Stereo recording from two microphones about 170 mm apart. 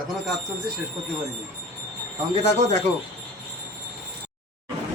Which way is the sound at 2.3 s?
40° right (ahead or behind).